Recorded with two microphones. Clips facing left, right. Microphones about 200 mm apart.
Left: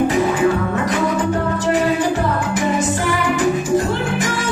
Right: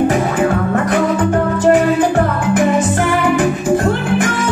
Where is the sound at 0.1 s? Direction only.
55° right (ahead or behind).